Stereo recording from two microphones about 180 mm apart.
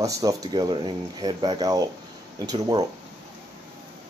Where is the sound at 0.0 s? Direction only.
20° right (ahead or behind).